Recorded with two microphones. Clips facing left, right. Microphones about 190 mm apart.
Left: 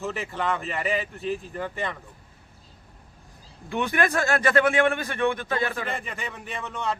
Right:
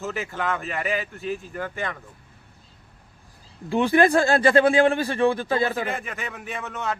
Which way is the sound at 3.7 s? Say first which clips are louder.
Right 6 dB; 30° right (ahead or behind).